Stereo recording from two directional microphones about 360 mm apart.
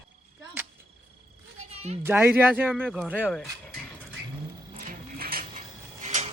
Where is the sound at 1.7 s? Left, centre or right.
Centre.